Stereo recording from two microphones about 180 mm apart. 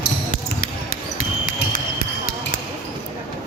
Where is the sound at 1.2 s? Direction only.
50° left (ahead or behind).